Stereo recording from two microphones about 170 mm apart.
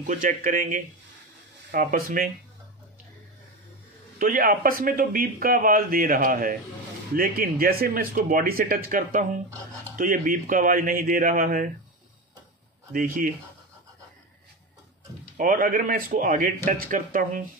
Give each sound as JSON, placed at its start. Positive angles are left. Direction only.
{"t": 0.0, "sound": "speech", "side_deg": -50}
{"t": 4.2, "sound": "speech", "side_deg": -55}
{"t": 12.9, "sound": "speech", "side_deg": -55}
{"t": 15.3, "sound": "speech", "side_deg": -55}